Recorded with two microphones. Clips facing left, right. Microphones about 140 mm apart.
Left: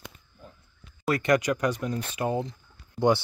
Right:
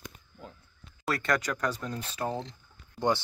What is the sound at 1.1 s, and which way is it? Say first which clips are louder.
Speech: left 6 dB; 15° left (ahead or behind).